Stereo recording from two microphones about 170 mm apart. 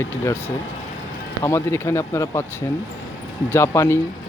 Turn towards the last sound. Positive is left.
turn(degrees=15)  # may be behind; listen again after turning